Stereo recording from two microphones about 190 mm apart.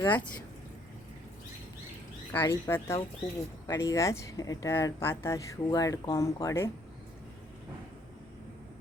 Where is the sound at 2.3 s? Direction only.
10° left (ahead or behind).